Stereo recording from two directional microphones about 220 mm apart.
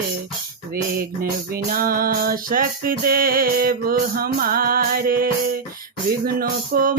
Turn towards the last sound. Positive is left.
turn(degrees=-40)  # may be behind; listen again after turning